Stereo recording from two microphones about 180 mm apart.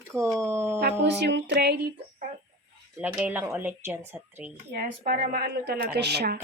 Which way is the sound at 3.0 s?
10° right (ahead or behind).